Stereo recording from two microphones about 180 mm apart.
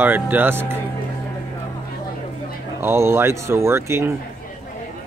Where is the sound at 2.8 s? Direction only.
15° right (ahead or behind).